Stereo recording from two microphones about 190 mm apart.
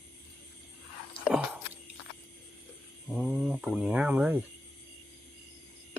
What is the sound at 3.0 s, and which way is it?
Speech, 5° right (ahead or behind).